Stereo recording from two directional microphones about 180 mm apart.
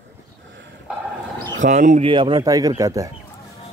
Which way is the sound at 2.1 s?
25° right (ahead or behind).